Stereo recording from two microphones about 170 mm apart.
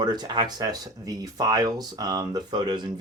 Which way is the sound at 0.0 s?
25° right (ahead or behind).